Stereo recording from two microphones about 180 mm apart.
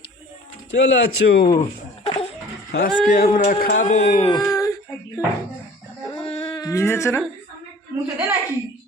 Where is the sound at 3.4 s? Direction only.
55° left (ahead or behind).